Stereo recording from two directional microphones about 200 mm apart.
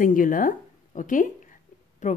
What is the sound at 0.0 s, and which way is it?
Speech, 45° left (ahead or behind).